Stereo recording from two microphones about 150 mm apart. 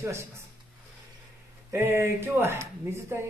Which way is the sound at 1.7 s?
15° right (ahead or behind).